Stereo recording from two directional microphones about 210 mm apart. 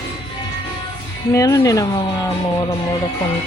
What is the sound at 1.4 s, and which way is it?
Speech, 15° left (ahead or behind).